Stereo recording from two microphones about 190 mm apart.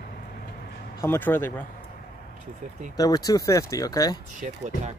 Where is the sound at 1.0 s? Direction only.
10° left (ahead or behind).